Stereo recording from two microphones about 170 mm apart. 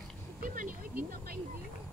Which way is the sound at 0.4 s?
50° right (ahead or behind).